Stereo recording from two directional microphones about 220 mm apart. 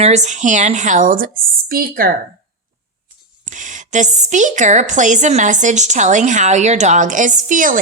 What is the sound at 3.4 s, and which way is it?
A woman's voice, 35° right (ahead or behind).